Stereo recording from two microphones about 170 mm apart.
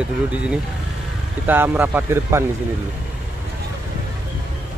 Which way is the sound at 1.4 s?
10° right (ahead or behind).